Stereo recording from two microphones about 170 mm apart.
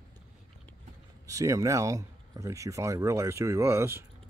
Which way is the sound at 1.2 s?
20° right (ahead or behind).